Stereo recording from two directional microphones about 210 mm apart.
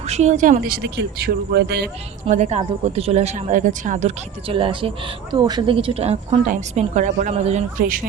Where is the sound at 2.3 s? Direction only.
30° right (ahead or behind).